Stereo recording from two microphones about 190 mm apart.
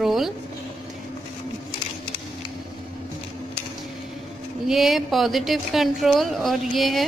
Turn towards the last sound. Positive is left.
turn(degrees=0)  # may be behind; listen again after turning